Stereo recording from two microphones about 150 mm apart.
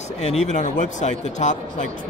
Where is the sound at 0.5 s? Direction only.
55° left (ahead or behind).